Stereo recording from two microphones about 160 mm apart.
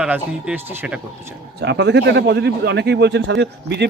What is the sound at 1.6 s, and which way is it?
Speech, 90° right.